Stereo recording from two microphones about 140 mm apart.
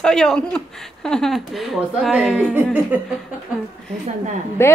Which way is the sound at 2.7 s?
10° right (ahead or behind).